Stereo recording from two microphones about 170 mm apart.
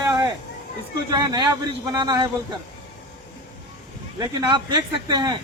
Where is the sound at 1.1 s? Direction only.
25° right (ahead or behind).